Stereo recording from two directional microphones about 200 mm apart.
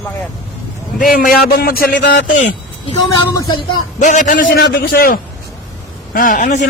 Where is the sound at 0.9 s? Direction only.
45° left (ahead or behind).